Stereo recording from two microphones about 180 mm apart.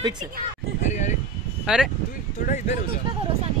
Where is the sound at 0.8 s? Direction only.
40° left (ahead or behind).